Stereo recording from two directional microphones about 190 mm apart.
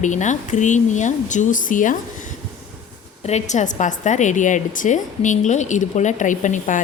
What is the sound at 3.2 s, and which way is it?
Speech, 35° left (ahead or behind).